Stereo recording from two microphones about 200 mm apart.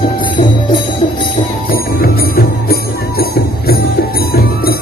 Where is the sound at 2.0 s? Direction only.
50° left (ahead or behind).